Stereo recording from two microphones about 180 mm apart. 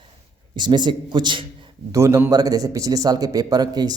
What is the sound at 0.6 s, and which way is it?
Speech, 25° right (ahead or behind).